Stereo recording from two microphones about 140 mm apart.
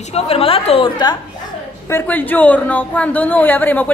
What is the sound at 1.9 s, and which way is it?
A woman's voice, 15° left (ahead or behind).